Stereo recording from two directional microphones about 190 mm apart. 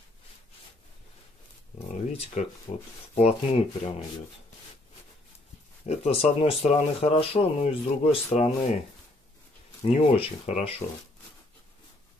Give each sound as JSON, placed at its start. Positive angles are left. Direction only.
{"t": 2.4, "sound": "speech", "side_deg": 35}
{"t": 5.9, "sound": "speech", "side_deg": 30}
{"t": 9.8, "sound": "speech", "side_deg": 30}